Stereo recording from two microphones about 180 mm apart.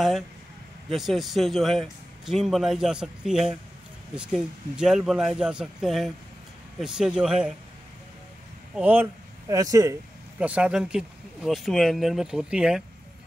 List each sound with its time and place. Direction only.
0.8 s speech: centre (ahead or behind)
8.7 s speech: 10° right (ahead or behind)
10.4 s speech: 5° right (ahead or behind)